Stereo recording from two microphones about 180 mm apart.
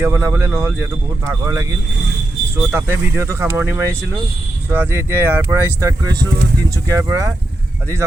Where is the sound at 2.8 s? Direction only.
15° right (ahead or behind).